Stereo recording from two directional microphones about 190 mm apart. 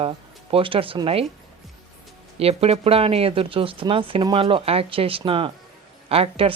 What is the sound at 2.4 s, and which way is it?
Speech, 30° right (ahead or behind).